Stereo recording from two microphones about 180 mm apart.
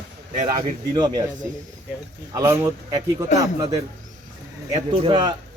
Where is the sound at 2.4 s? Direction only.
15° right (ahead or behind).